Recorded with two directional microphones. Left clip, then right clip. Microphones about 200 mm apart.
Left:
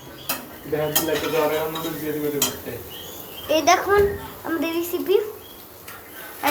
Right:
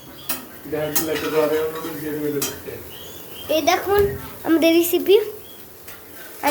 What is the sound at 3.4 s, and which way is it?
Speech, centre (ahead or behind).